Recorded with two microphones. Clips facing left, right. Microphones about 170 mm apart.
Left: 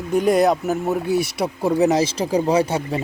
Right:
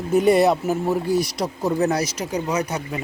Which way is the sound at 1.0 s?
55° left (ahead or behind).